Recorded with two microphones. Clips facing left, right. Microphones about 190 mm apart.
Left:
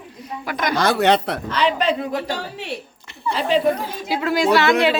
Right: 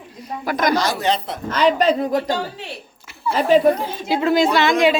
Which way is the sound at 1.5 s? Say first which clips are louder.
Right 4 dB; 45° right (ahead or behind).